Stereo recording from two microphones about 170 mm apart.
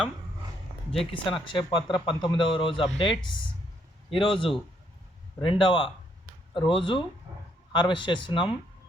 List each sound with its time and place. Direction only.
1.1 s a man's voice: 30° left (ahead or behind)